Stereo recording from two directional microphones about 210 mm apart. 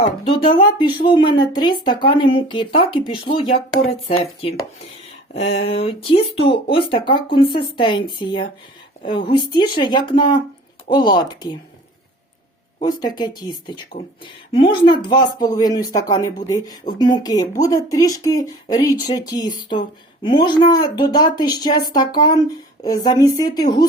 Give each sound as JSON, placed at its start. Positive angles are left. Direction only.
{"t": 0.0, "sound": "a woman's voice", "side_deg": 25}
{"t": 12.8, "sound": "a woman's voice", "side_deg": 20}